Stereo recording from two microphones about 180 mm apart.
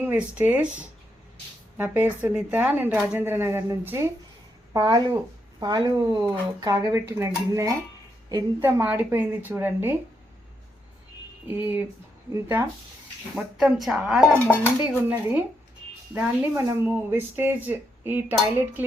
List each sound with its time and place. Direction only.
0.0 s speech: 10° right (ahead or behind)
12.3 s speech: 15° right (ahead or behind)
13.3 s speech: centre (ahead or behind)